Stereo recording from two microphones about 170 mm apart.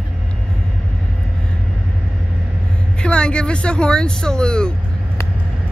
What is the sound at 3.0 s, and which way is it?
Speech, 5° left (ahead or behind).